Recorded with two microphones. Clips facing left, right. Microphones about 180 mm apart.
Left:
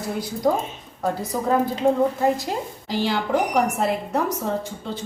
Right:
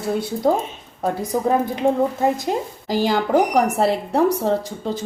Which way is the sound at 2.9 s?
45° right (ahead or behind).